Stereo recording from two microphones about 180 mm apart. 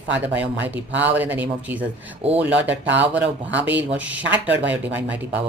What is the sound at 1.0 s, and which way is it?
Speech, 10° right (ahead or behind).